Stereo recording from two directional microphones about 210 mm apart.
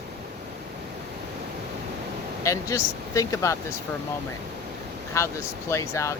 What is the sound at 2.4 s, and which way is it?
Speech, 15° left (ahead or behind).